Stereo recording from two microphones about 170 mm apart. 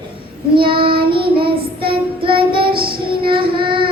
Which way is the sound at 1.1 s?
30° right (ahead or behind).